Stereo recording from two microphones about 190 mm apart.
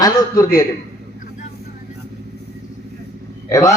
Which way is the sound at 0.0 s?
20° left (ahead or behind).